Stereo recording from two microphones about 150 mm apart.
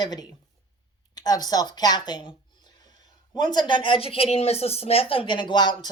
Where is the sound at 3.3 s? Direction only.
30° left (ahead or behind).